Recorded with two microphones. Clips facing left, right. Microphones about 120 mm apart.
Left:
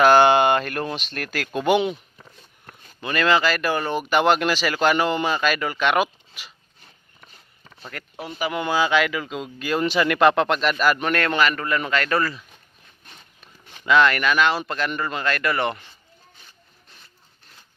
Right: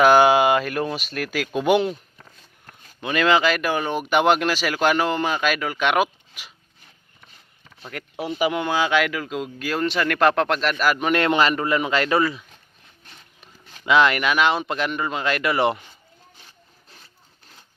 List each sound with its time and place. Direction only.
0.0 s speech: 5° right (ahead or behind)
3.0 s speech: 5° right (ahead or behind)
5.3 s speech: 5° right (ahead or behind)
7.8 s a sound: 10° right (ahead or behind)
8.6 s speech: 5° left (ahead or behind)
11.1 s a man's voice: 20° right (ahead or behind)
12.1 s speech: centre (ahead or behind)
13.4 s a sound: 15° right (ahead or behind)
14.8 s speech: 5° right (ahead or behind)
15.2 s speech: 20° right (ahead or behind)